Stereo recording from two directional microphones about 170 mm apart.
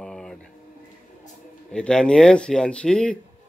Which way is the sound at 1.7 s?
5° left (ahead or behind).